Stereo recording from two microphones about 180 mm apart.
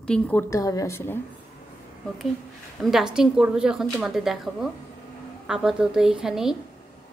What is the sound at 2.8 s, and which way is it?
Speech, centre (ahead or behind).